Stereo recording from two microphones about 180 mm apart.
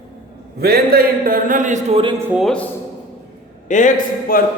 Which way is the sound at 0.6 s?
60° right (ahead or behind).